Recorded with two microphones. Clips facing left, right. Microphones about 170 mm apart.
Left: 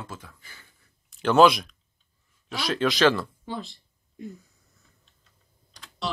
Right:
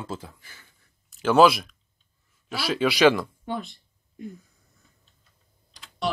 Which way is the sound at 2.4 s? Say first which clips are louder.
Right 1 dB; 5° right (ahead or behind).